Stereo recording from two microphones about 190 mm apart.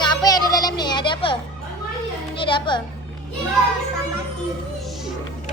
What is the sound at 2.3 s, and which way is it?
Speech, 25° left (ahead or behind).